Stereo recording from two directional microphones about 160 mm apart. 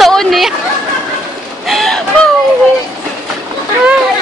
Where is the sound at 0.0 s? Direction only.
Centre (ahead or behind).